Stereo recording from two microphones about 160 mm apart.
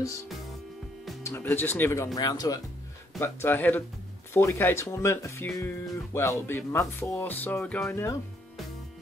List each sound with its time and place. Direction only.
1.2 s speech: 15° left (ahead or behind)